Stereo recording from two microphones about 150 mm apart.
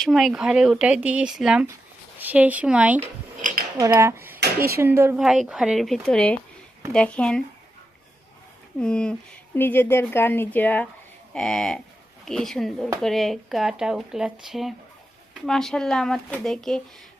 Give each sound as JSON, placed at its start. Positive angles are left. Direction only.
{"t": 0.0, "sound": "speech", "side_deg": 0}
{"t": 3.8, "sound": "speech", "side_deg": -20}
{"t": 5.1, "sound": "a woman's voice", "side_deg": -5}
{"t": 8.8, "sound": "a woman's voice", "side_deg": 5}